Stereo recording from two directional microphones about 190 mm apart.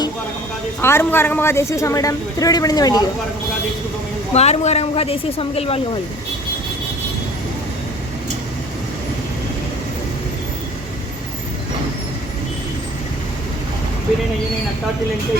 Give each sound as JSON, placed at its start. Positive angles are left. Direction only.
{"t": 0.8, "sound": "a woman's voice", "side_deg": 10}
{"t": 4.4, "sound": "a woman's voice", "side_deg": 35}